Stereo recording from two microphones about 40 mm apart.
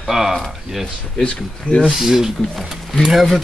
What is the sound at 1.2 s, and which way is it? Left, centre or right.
Speech, left.